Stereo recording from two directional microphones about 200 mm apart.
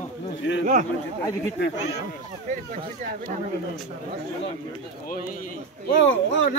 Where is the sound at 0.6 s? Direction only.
40° right (ahead or behind).